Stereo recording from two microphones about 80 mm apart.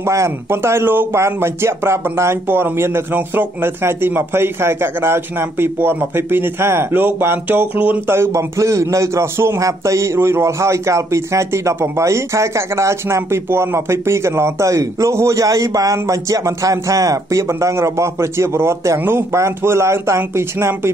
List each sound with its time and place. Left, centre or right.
0.0 s speech: right; by 8.0 s centre
8.1 s a man's voice: right